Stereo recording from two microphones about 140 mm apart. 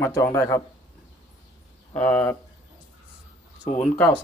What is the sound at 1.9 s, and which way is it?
Speech, 10° left (ahead or behind).